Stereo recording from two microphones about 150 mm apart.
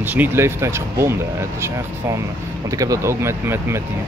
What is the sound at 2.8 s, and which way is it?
Speech, 20° right (ahead or behind).